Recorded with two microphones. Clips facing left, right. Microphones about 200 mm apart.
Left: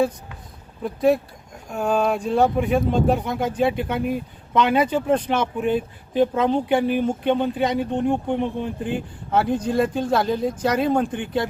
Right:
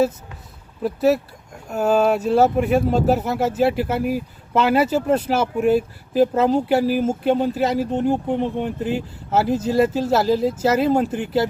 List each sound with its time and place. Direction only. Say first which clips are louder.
0.8 s speech: right 1 dB; 5° right (ahead or behind)